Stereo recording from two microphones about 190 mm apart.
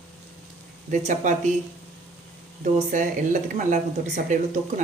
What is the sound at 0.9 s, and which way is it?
Speech, 40° right (ahead or behind).